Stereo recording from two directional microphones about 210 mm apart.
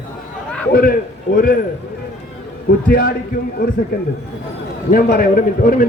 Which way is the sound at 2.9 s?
45° left (ahead or behind).